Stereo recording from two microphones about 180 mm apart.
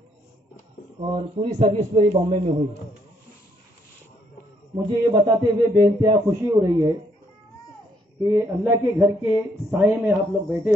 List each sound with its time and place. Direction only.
1.0 s a man's voice: 30° right (ahead or behind)
1.5 s a man's voice: 40° right (ahead or behind)
4.8 s a man's voice: 20° right (ahead or behind)
8.2 s speech: 15° right (ahead or behind)